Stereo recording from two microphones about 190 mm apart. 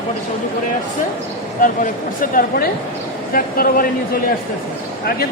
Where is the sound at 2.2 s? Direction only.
45° left (ahead or behind).